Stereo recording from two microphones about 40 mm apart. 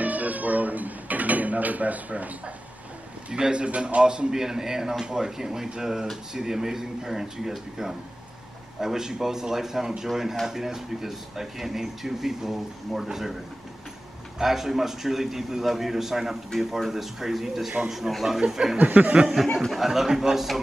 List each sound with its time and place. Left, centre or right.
0.0 s cat: right
3.3 s a man's voice: right; by 13.3 s centre
14.4 s speech: centre
18.8 s a sound: right
19.4 s speech: centre
19.8 s speech: centre